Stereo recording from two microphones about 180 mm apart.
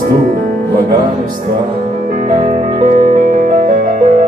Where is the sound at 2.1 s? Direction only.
45° right (ahead or behind).